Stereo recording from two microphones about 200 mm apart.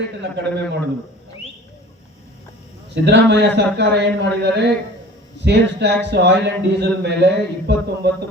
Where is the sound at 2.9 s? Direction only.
60° right (ahead or behind).